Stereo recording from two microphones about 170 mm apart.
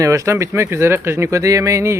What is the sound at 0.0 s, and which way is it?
Speech, 20° right (ahead or behind).